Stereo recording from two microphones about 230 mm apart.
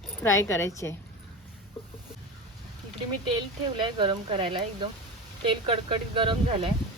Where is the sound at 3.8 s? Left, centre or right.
Right.